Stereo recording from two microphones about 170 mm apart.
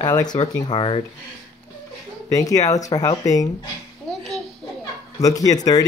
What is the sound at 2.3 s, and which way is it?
Speech, 20° left (ahead or behind).